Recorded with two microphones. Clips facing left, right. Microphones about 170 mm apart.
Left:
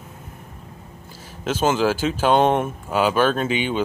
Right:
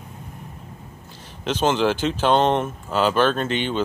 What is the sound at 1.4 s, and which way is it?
Speech, 5° left (ahead or behind).